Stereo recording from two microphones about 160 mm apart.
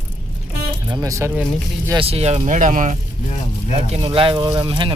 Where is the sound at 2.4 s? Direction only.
55° right (ahead or behind).